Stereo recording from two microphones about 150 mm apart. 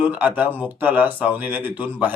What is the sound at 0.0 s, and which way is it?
Speech, 10° right (ahead or behind).